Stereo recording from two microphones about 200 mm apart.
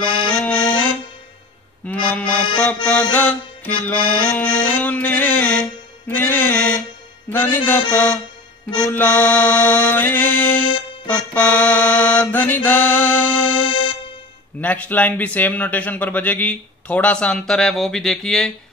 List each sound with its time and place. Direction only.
0.3 s accordion: 5° left (ahead or behind)
3.8 s music: 5° left (ahead or behind)
7.2 s a man's voice: 10° left (ahead or behind)
11.1 s music: 10° left (ahead or behind)
13.7 s music: 25° left (ahead or behind)
14.6 s a man's voice: 10° left (ahead or behind)